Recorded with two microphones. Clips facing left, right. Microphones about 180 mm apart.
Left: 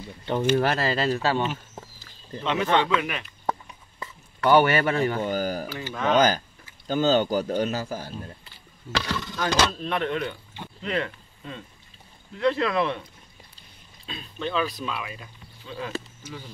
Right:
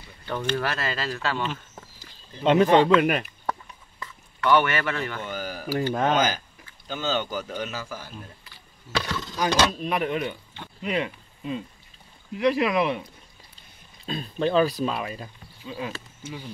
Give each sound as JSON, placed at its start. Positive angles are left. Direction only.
{"t": 0.2, "sound": "speech", "side_deg": 25}
{"t": 2.4, "sound": "speech", "side_deg": -35}
{"t": 4.0, "sound": "speech", "side_deg": 35}
{"t": 5.8, "sound": "speech", "side_deg": -45}
{"t": 6.1, "sound": "speech", "side_deg": 40}
{"t": 9.4, "sound": "speech", "side_deg": -15}
{"t": 14.0, "sound": "speech", "side_deg": -40}
{"t": 15.6, "sound": "speech", "side_deg": -10}